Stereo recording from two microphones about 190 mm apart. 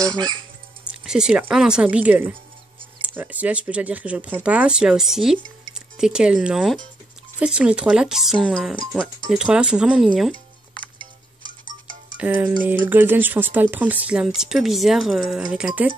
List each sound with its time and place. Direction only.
0.0 s fowl: 20° right (ahead or behind)
1.0 s speech: 5° right (ahead or behind)
12.2 s speech: 10° right (ahead or behind)